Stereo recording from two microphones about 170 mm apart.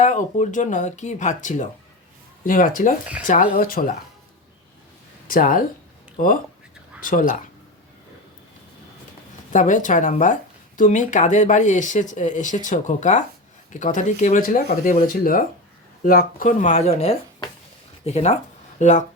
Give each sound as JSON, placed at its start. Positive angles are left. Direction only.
{"t": 0.0, "sound": "speech", "side_deg": 45}
{"t": 5.3, "sound": "speech", "side_deg": 55}
{"t": 9.5, "sound": "speech", "side_deg": 50}